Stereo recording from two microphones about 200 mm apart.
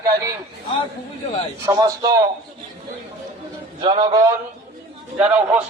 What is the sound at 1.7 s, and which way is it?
Speech, 20° right (ahead or behind).